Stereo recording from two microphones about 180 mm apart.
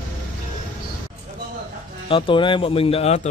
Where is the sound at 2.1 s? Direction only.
30° left (ahead or behind).